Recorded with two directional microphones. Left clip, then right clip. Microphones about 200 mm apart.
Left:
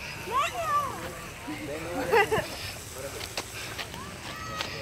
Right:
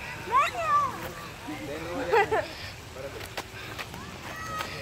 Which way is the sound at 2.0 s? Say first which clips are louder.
Even; centre (ahead or behind).